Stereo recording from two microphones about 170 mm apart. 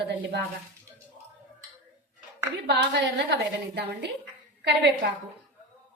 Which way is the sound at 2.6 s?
80° right.